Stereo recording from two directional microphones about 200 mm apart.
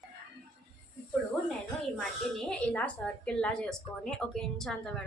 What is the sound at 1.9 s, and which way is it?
Speech, 5° left (ahead or behind).